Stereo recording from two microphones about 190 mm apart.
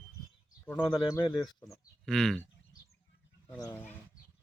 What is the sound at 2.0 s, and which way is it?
Speech, 5° left (ahead or behind).